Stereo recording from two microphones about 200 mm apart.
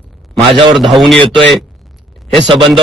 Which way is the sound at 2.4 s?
25° right (ahead or behind).